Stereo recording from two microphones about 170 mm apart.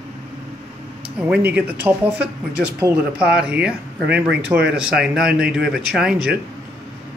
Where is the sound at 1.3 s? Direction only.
10° right (ahead or behind).